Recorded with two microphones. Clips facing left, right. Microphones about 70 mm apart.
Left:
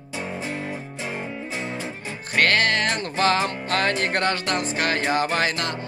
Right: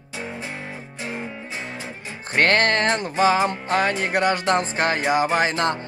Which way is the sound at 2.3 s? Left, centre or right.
Right.